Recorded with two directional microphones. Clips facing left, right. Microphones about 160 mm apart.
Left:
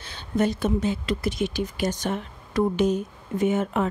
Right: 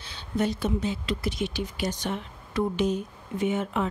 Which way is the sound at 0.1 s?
50° left (ahead or behind).